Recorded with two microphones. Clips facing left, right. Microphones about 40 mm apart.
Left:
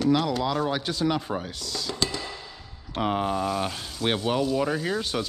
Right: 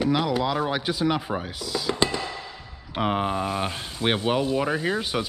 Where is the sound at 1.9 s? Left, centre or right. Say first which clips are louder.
Right 4 dB; right.